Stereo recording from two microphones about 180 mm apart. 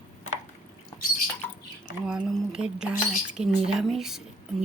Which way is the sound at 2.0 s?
5° right (ahead or behind).